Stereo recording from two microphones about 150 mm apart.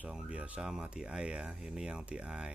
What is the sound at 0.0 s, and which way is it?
Speech, 5° right (ahead or behind).